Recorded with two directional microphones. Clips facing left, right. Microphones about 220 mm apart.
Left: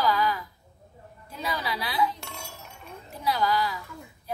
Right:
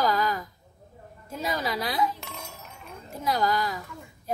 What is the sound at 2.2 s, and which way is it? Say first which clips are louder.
Chink: right 1 dB; centre (ahead or behind).